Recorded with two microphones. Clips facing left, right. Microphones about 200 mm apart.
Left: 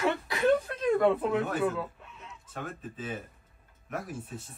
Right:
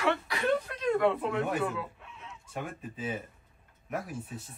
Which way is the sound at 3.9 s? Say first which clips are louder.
Right 1 dB; centre (ahead or behind).